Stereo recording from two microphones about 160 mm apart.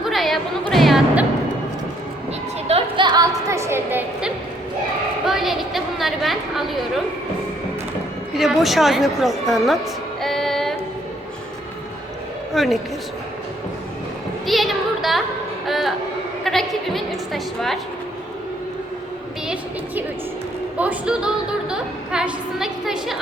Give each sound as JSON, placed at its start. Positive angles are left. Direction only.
{"t": 0.0, "sound": "music", "side_deg": 0}
{"t": 2.6, "sound": "a sound", "side_deg": -35}
{"t": 5.2, "sound": "chatter", "side_deg": 0}
{"t": 8.4, "sound": "a woman's voice", "side_deg": 0}
{"t": 10.2, "sound": "music", "side_deg": 0}
{"t": 12.5, "sound": "a woman's voice", "side_deg": 0}
{"t": 14.4, "sound": "a sound", "side_deg": 0}
{"t": 15.6, "sound": "a woman's voice", "side_deg": 0}
{"t": 20.7, "sound": "a woman's voice", "side_deg": -10}